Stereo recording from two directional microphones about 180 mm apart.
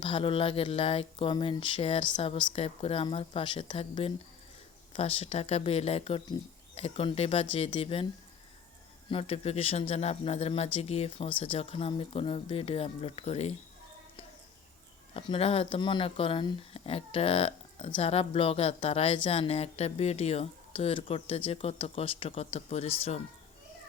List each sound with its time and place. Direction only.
0.0 s speech: 30° left (ahead or behind)
9.0 s speech: 30° left (ahead or behind)
15.1 s speech: 35° left (ahead or behind)